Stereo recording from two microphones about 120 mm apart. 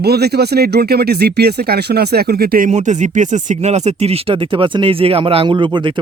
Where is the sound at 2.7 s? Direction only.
80° right.